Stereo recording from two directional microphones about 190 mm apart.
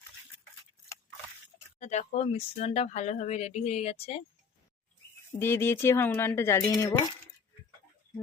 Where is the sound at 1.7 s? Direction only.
40° left (ahead or behind).